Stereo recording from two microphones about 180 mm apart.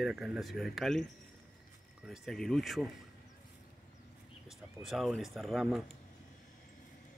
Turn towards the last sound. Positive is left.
turn(degrees=0)  # may be behind; listen again after turning